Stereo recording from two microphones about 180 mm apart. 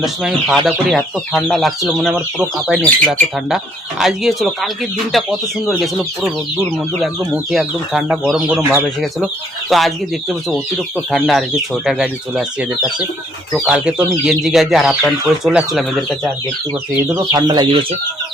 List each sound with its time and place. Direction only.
0.0 s speech: centre (ahead or behind)
4.0 s speech: centre (ahead or behind)
17.3 s speech: 20° right (ahead or behind)